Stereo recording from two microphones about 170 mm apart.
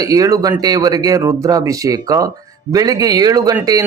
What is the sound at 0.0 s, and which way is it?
Speech, 20° right (ahead or behind).